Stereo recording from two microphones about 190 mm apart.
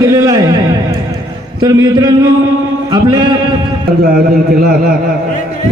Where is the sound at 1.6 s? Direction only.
20° right (ahead or behind).